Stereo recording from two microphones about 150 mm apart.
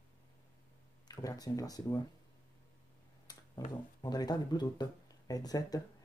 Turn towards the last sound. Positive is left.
turn(degrees=25)  # may be behind; listen again after turning